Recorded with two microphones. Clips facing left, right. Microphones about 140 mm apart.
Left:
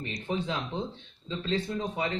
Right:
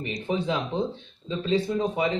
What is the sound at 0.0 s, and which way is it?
A man's voice, 15° right (ahead or behind).